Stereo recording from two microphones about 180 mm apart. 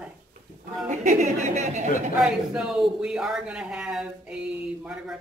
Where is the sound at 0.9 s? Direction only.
40° right (ahead or behind).